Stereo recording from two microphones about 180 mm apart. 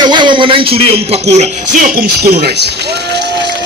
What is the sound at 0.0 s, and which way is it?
Speech, 25° right (ahead or behind).